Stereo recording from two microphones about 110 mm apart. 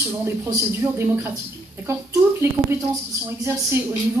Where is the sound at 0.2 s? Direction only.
25° right (ahead or behind).